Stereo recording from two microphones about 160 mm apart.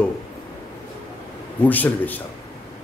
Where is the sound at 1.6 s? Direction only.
10° left (ahead or behind).